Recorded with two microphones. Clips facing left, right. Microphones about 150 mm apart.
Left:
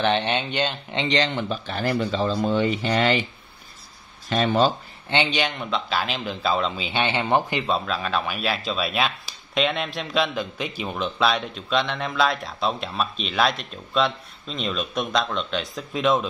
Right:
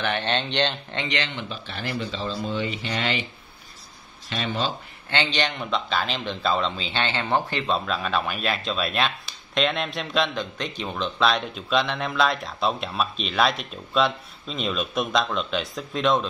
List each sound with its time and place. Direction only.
0.2 s speech: 10° left (ahead or behind)
1.0 s speech: 35° left (ahead or behind)
4.3 s speech: 50° left (ahead or behind)
5.1 s speech: 15° left (ahead or behind)
5.4 s speech: centre (ahead or behind)
7.6 s speech: centre (ahead or behind)